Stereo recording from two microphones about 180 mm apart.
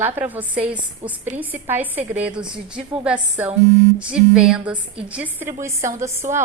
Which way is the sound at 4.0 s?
5° right (ahead or behind).